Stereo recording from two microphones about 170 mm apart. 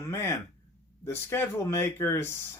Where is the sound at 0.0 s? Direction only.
15° left (ahead or behind).